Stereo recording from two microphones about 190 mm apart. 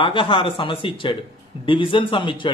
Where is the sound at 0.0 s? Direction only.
25° left (ahead or behind).